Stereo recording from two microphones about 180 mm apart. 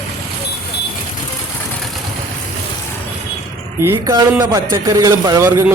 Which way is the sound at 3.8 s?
15° right (ahead or behind).